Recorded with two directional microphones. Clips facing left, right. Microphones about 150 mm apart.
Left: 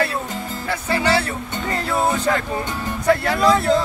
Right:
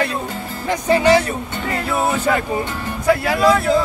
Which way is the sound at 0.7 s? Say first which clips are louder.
Right 6 dB; 15° right (ahead or behind).